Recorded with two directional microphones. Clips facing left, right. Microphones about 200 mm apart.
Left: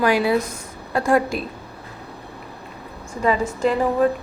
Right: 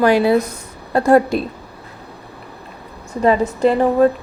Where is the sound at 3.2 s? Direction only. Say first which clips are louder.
Right 5 dB; 35° right (ahead or behind).